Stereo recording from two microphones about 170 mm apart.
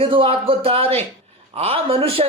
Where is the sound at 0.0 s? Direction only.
35° right (ahead or behind).